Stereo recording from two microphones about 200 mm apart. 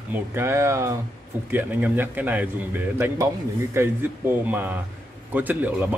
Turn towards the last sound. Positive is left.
turn(degrees=-5)  # may be behind; listen again after turning